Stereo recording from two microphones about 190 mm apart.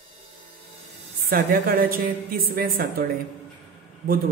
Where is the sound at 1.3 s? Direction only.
50° right (ahead or behind).